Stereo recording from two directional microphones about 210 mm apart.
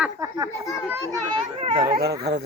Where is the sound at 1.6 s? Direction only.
25° right (ahead or behind).